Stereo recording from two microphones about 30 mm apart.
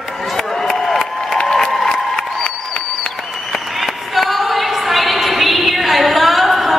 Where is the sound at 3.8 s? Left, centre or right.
Centre.